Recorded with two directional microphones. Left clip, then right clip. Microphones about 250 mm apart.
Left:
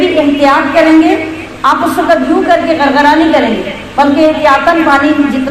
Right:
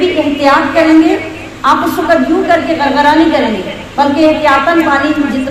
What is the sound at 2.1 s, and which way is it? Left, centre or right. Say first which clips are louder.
A woman's voice: even; centre.